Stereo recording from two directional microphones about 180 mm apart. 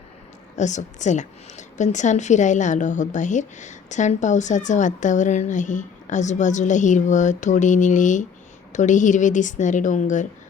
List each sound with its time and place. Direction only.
0.5 s a woman's voice: 40° left (ahead or behind)